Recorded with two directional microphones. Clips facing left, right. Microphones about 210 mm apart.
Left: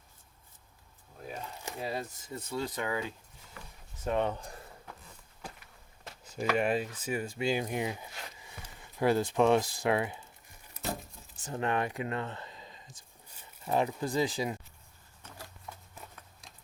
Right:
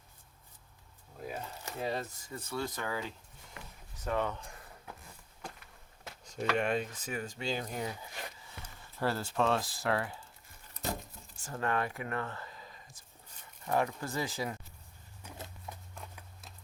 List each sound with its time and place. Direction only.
1.3 s a sound: 10° left (ahead or behind)
2.2 s speech: 20° left (ahead or behind)
6.2 s speech: 5° left (ahead or behind)
11.3 s speech: 20° left (ahead or behind)
15.7 s horse: 15° right (ahead or behind)